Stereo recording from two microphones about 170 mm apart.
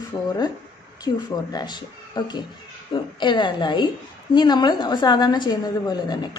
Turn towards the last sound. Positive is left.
turn(degrees=25)  # may be behind; listen again after turning